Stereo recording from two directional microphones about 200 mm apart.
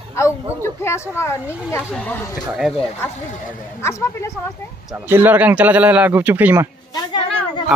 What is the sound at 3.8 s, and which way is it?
Speech, 15° left (ahead or behind).